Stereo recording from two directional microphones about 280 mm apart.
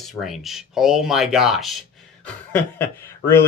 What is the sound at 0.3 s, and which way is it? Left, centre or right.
Speech, centre.